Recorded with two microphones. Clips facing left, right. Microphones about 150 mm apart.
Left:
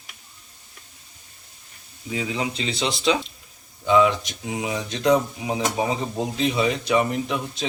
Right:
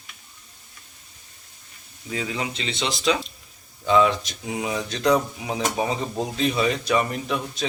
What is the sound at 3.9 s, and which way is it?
Speech, 15° left (ahead or behind).